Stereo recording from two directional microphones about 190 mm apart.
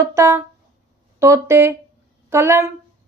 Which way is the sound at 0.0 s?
15° right (ahead or behind).